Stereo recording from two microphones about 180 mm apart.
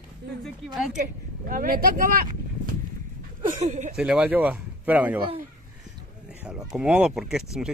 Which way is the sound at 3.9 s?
5° right (ahead or behind).